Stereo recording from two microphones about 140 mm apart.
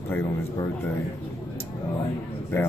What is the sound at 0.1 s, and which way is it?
Speech, 20° left (ahead or behind).